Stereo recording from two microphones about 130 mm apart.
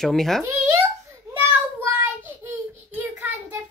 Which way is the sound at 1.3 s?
20° right (ahead or behind).